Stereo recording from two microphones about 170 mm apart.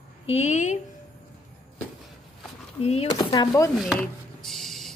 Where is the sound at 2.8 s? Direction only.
35° left (ahead or behind).